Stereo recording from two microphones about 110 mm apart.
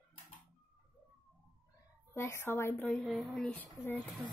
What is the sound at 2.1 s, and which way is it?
Speech, 20° left (ahead or behind).